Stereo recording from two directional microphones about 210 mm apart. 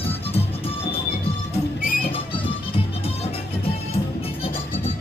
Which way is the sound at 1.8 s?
45° left (ahead or behind).